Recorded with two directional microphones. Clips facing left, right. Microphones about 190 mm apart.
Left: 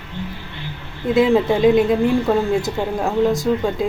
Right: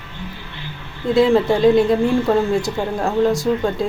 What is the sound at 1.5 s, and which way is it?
A woman's voice, 5° left (ahead or behind).